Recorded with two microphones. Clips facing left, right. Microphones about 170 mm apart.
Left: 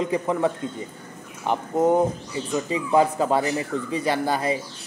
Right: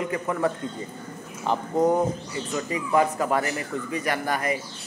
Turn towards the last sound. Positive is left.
turn(degrees=25)  # may be behind; listen again after turning